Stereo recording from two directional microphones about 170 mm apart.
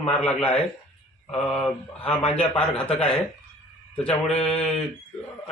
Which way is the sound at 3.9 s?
5° left (ahead or behind).